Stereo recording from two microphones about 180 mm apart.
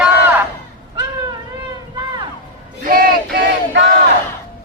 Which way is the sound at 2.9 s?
55° right (ahead or behind).